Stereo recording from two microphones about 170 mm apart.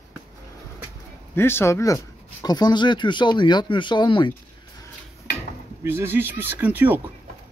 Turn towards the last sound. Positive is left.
turn(degrees=-10)  # may be behind; listen again after turning